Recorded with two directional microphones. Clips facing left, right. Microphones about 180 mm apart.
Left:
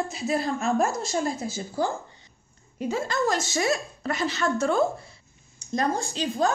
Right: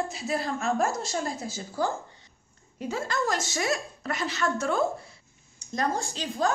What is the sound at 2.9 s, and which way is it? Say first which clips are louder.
A woman's voice: left 3 dB; 25° left (ahead or behind).